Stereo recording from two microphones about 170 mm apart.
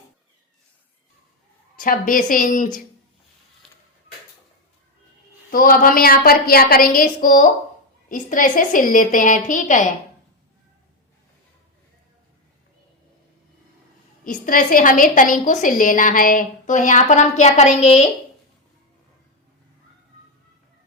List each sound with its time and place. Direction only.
1.8 s a woman's voice: 55° left (ahead or behind)
5.5 s a woman's voice: 55° left (ahead or behind)
14.3 s a woman's voice: 50° left (ahead or behind)